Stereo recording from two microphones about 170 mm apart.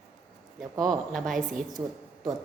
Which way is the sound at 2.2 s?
25° right (ahead or behind).